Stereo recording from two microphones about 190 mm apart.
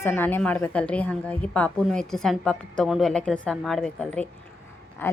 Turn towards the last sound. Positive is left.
turn(degrees=10)  # may be behind; listen again after turning